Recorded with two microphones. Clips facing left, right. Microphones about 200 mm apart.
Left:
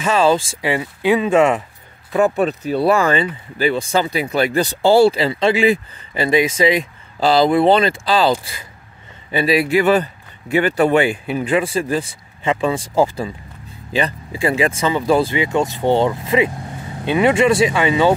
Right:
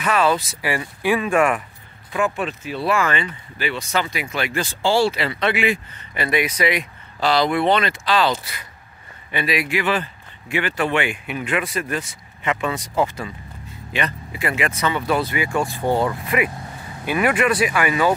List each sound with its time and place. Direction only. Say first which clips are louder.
0.0 s speech: left 4 dB; 25° left (ahead or behind)
2.1 s speech: left 7 dB; 40° left (ahead or behind)